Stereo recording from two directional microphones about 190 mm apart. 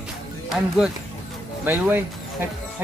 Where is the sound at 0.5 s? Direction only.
Centre (ahead or behind).